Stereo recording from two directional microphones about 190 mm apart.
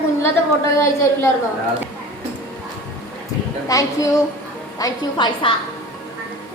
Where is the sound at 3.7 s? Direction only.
20° left (ahead or behind).